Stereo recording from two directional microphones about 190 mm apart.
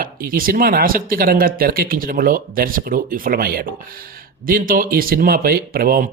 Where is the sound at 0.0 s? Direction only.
50° right (ahead or behind).